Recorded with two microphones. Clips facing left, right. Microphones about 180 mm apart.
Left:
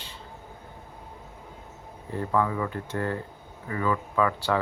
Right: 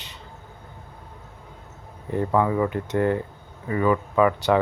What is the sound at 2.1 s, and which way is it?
Speech, 20° right (ahead or behind).